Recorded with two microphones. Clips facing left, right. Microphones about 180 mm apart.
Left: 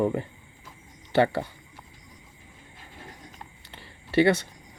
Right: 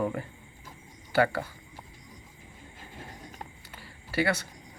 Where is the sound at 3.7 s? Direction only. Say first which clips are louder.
Left 2 dB; 25° left (ahead or behind).